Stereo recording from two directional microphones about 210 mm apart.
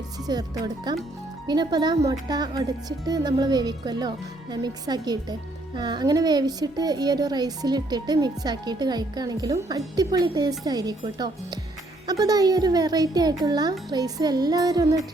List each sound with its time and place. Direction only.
0.3 s a child's voice: 20° right (ahead or behind)